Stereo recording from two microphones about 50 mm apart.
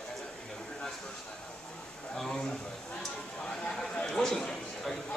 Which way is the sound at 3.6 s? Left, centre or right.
Centre.